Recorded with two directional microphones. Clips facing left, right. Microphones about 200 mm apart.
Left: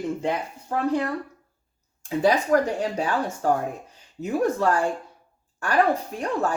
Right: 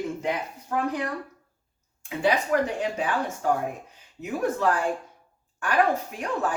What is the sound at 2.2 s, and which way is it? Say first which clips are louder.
Speech: left 3 dB; 40° left (ahead or behind).